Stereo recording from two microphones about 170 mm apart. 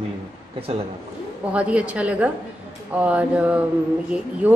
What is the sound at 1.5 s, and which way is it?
A woman's voice, 5° right (ahead or behind).